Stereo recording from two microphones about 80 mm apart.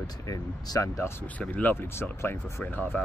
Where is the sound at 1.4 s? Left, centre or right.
Centre.